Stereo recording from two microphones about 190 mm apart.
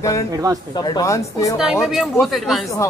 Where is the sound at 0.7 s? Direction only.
20° left (ahead or behind).